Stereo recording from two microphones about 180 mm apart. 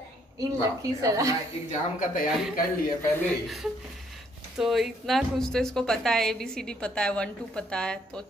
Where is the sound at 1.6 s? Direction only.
45° left (ahead or behind).